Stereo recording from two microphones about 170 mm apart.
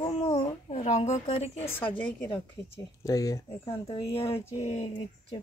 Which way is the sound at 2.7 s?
20° left (ahead or behind).